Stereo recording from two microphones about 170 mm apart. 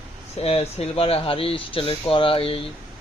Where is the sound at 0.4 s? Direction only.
35° left (ahead or behind).